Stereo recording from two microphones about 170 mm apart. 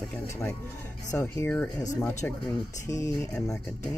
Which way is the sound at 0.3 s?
15° left (ahead or behind).